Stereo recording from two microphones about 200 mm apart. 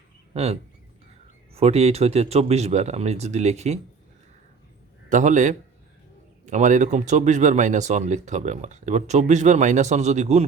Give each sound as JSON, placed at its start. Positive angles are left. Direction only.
{"t": 0.3, "sound": "speech", "side_deg": -30}
{"t": 5.0, "sound": "speech", "side_deg": -40}